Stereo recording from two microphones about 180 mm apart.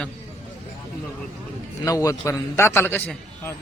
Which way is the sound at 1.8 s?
20° left (ahead or behind).